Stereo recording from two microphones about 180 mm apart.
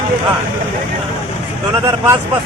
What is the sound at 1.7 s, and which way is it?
Speech, 20° right (ahead or behind).